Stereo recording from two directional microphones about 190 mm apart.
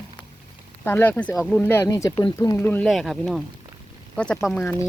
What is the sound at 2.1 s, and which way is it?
Speech, 30° left (ahead or behind).